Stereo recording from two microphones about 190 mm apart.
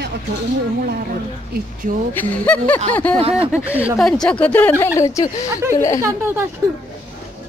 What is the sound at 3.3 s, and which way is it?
Speech, 5° right (ahead or behind).